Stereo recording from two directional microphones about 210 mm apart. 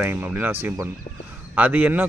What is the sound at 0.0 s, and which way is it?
Speech, 10° right (ahead or behind).